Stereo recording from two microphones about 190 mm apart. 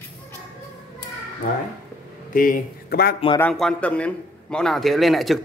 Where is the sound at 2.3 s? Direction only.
45° left (ahead or behind).